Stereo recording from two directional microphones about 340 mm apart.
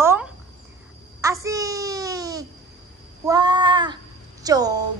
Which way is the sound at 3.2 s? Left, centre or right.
Centre.